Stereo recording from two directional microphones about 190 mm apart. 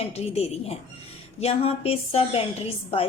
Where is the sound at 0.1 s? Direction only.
35° left (ahead or behind).